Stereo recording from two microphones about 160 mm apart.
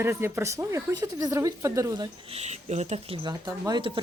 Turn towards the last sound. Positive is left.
turn(degrees=-25)  # may be behind; listen again after turning